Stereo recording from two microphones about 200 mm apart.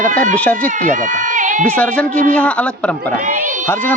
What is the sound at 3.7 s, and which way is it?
Speech, 10° left (ahead or behind).